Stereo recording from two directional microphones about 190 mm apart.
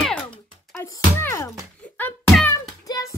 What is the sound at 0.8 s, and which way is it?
Speech, 10° left (ahead or behind).